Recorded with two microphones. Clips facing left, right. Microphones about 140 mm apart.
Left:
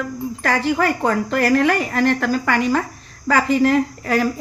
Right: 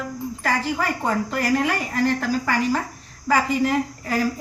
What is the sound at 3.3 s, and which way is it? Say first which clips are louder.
Speech: left 4 dB; 90° left.